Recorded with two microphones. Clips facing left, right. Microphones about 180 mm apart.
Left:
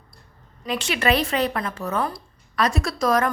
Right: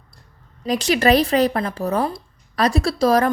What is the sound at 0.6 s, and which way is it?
A woman's voice, 40° right (ahead or behind).